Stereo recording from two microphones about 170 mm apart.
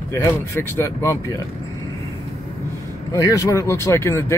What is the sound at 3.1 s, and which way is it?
Speech, 20° left (ahead or behind).